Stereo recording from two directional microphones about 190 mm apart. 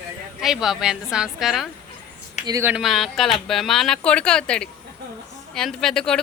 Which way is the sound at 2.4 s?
15° right (ahead or behind).